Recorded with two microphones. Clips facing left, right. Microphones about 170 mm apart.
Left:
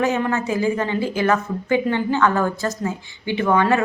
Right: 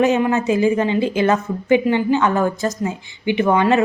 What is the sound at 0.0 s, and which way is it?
A woman's voice, 20° right (ahead or behind).